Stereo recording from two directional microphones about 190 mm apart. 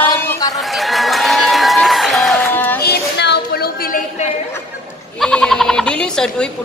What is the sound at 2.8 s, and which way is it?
Music, 60° left (ahead or behind).